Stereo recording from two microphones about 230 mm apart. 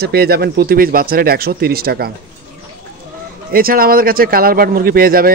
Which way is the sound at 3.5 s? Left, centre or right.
Right.